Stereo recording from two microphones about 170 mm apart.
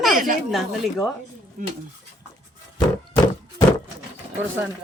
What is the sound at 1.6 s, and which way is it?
Speech, 50° right (ahead or behind).